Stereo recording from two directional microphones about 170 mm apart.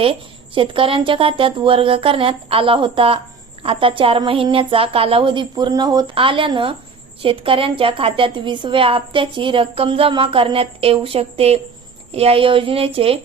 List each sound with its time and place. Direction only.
0.0 s a woman's voice: 30° right (ahead or behind)